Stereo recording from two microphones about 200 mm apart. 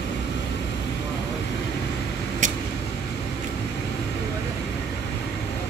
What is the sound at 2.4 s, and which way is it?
Vehicle, 40° right (ahead or behind).